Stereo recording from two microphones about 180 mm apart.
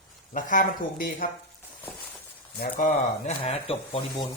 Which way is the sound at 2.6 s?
50° left (ahead or behind).